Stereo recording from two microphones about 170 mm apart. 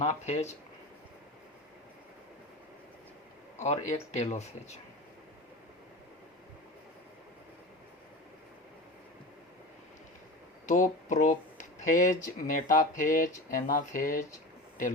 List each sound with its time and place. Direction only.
0.0 s speech: 40° left (ahead or behind)
3.6 s speech: 40° left (ahead or behind)
10.7 s speech: 50° left (ahead or behind)